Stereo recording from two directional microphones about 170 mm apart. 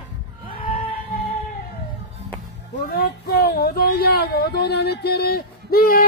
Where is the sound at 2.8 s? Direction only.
70° left (ahead or behind).